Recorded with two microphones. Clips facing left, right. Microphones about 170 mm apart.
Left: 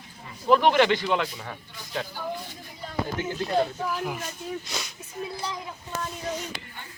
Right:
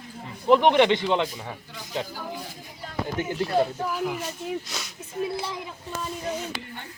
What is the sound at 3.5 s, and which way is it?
Speech, 5° right (ahead or behind).